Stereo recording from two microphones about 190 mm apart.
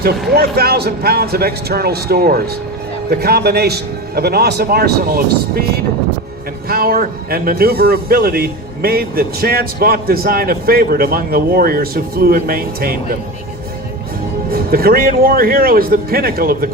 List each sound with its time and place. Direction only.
0.3 s a man's voice: 55° right (ahead or behind)
14.5 s speech: 50° right (ahead or behind)